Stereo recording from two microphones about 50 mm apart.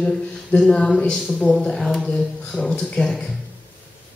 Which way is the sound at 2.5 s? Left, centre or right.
Centre.